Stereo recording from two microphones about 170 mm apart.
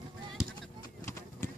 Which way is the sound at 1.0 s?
15° left (ahead or behind).